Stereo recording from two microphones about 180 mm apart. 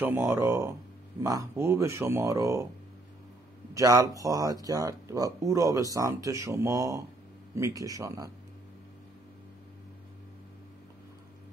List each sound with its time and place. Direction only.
0.0 s speech: 15° right (ahead or behind)
3.7 s speech: 20° right (ahead or behind)